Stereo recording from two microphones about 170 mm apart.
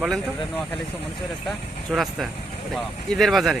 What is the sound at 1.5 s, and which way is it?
Speech, centre (ahead or behind).